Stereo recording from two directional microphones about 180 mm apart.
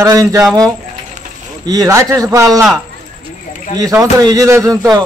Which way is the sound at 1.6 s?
20° right (ahead or behind).